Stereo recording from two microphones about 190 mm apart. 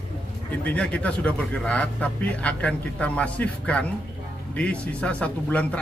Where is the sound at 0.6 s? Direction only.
10° left (ahead or behind).